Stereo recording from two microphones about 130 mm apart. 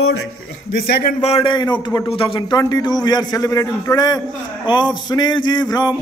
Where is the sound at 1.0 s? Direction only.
60° left (ahead or behind).